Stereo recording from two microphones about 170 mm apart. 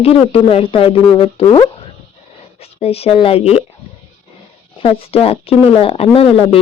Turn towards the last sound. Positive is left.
turn(degrees=35)  # may be behind; listen again after turning